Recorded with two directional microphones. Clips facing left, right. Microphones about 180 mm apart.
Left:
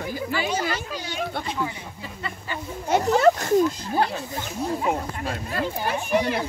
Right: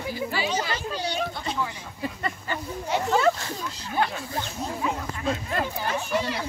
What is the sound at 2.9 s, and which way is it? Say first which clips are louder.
A child's voice: left 4 dB; 50° left (ahead or behind).